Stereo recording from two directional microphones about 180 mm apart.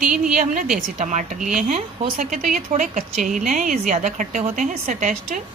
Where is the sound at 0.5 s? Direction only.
45° right (ahead or behind).